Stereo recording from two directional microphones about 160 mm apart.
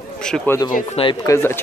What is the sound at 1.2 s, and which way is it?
Speech, 15° left (ahead or behind).